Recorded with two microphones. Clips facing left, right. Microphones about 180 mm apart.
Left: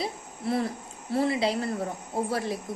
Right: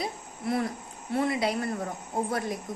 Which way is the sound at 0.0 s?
30° left (ahead or behind).